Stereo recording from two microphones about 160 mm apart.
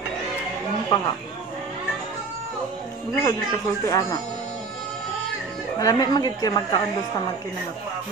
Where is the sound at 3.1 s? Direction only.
25° left (ahead or behind).